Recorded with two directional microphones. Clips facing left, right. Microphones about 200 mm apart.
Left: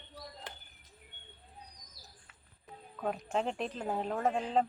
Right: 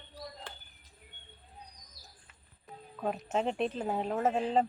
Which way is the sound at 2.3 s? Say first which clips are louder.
Even; centre (ahead or behind).